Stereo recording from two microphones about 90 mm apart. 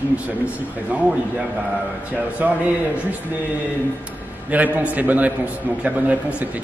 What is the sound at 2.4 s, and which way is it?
Speech, 20° right (ahead or behind).